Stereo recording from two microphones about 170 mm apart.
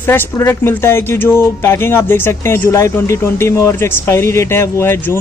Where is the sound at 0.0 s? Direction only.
10° left (ahead or behind).